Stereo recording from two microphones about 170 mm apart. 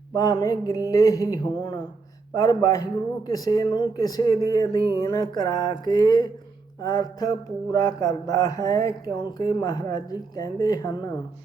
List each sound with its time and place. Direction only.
0.1 s speech: 20° left (ahead or behind)